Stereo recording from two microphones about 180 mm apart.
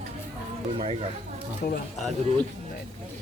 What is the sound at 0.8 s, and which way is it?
Speech, 35° right (ahead or behind).